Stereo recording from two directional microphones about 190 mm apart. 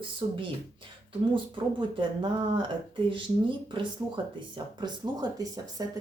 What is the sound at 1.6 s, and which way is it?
Speech, 25° right (ahead or behind).